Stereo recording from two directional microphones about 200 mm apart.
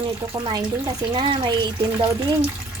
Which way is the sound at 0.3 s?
20° right (ahead or behind).